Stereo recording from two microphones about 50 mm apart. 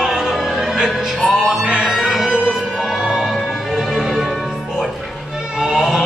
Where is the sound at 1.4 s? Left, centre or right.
Centre.